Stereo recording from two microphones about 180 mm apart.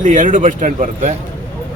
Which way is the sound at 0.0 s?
45° right (ahead or behind).